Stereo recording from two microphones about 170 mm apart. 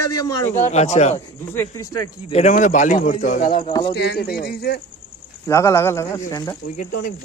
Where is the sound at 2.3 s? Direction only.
45° left (ahead or behind).